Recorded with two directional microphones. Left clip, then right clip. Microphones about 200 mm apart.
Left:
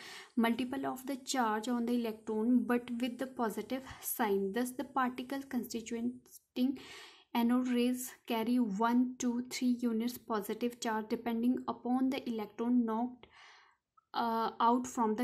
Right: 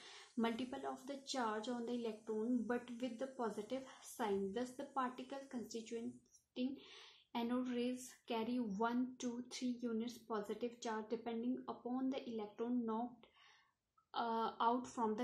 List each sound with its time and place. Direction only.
0.0 s speech: 40° left (ahead or behind)
14.1 s speech: 30° left (ahead or behind)